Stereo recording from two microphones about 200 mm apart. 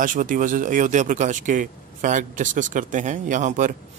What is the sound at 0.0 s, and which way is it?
Speech, 40° right (ahead or behind).